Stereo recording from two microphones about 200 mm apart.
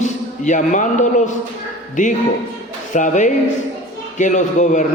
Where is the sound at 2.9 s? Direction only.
40° left (ahead or behind).